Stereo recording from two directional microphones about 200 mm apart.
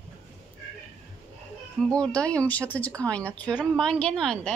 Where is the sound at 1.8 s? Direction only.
5° left (ahead or behind).